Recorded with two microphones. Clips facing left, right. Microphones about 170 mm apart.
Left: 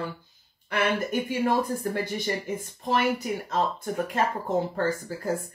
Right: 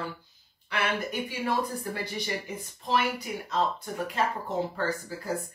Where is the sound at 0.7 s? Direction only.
50° left (ahead or behind).